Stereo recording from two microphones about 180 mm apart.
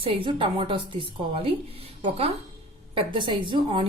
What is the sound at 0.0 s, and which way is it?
A woman's voice, 30° right (ahead or behind).